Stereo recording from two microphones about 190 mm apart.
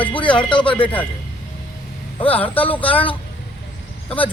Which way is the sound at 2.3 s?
10° left (ahead or behind).